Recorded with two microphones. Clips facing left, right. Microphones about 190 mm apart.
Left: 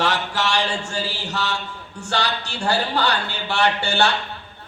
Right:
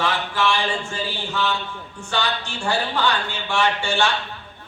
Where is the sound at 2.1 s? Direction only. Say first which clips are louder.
Even; 70° left (ahead or behind).